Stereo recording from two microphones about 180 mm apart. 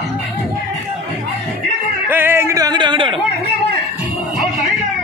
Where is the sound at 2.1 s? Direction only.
10° right (ahead or behind); by 3.1 s 25° right (ahead or behind).